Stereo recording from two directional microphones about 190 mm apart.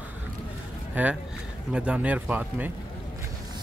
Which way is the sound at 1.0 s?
10° right (ahead or behind).